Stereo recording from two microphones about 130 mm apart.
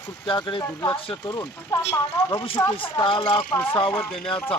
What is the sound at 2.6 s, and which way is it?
Speech, 30° left (ahead or behind).